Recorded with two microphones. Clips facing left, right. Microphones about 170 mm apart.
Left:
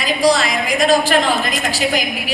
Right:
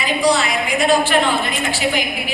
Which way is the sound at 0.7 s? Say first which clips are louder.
Left 2 dB; 40° left (ahead or behind).